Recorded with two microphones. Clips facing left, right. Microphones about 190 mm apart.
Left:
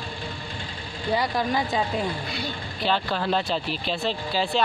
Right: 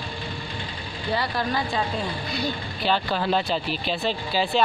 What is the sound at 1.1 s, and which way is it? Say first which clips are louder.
Speech: left 2 dB; 15° left (ahead or behind).